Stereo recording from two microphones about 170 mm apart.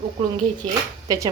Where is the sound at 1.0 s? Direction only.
20° right (ahead or behind).